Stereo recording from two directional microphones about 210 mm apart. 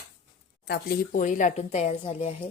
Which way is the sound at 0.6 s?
45° left (ahead or behind).